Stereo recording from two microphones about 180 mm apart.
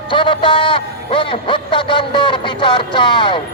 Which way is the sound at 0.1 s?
25° left (ahead or behind).